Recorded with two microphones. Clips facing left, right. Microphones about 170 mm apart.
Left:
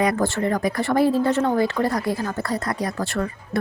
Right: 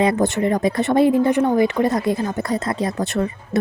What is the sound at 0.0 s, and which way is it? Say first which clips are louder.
A woman's voice: right 3 dB; 25° right (ahead or behind).